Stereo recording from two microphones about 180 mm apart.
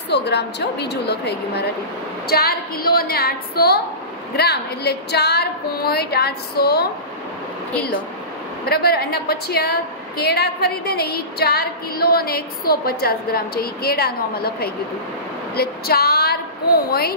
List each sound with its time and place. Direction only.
0.1 s a woman's voice: 70° left (ahead or behind)
8.6 s a woman's voice: 60° left (ahead or behind)